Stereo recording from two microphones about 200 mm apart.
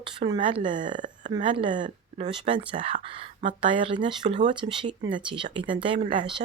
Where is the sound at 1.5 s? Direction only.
25° right (ahead or behind).